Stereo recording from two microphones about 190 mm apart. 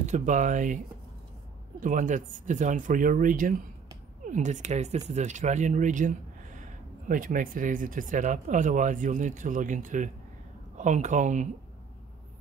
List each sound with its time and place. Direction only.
0.0 s speech: 40° right (ahead or behind)
1.8 s speech: 45° right (ahead or behind)